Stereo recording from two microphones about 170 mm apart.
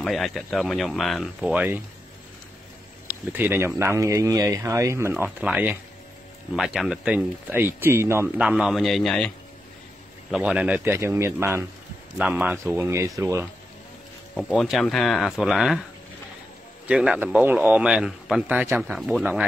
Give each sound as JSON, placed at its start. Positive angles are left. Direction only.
{"t": 0.0, "sound": "speech", "side_deg": 0}
{"t": 3.1, "sound": "speech", "side_deg": -10}
{"t": 8.4, "sound": "speech", "side_deg": -5}
{"t": 10.3, "sound": "speech", "side_deg": -5}
{"t": 14.3, "sound": "speech", "side_deg": 0}
{"t": 16.8, "sound": "speech", "side_deg": -5}